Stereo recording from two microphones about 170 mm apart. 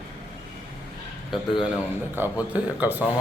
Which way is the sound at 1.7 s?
10° right (ahead or behind).